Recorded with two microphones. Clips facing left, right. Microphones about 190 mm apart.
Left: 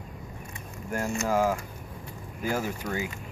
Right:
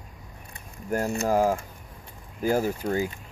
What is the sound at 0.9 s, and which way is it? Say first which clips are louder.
Speech: right 3 dB; 35° right (ahead or behind).